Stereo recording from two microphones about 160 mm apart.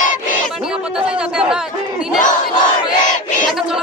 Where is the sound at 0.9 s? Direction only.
5° right (ahead or behind).